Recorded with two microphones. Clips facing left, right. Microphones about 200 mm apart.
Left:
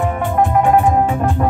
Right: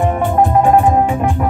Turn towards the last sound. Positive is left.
turn(degrees=-30)  # may be behind; listen again after turning